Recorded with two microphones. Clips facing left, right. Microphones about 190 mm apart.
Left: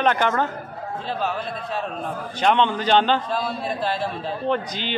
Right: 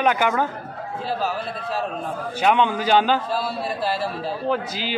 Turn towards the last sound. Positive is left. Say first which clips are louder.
# even
turn(degrees=-5)  # may be behind; listen again after turning